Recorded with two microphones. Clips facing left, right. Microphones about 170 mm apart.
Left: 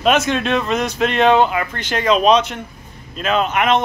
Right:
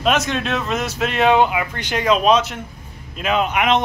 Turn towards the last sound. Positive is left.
turn(degrees=-15)  # may be behind; listen again after turning